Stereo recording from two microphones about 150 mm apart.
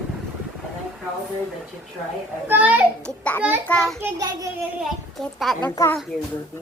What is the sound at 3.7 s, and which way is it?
Speech, 5° left (ahead or behind).